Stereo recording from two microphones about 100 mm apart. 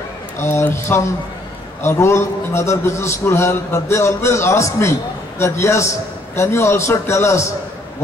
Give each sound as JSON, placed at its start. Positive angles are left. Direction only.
{"t": 0.4, "sound": "a man's voice", "side_deg": 25}